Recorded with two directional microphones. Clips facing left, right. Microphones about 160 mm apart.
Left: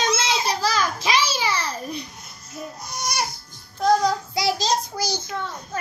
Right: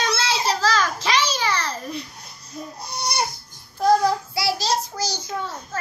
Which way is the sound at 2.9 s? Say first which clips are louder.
Right 2 dB; 30° right (ahead or behind).